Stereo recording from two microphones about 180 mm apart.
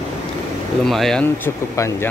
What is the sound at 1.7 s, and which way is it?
Speech, 15° left (ahead or behind).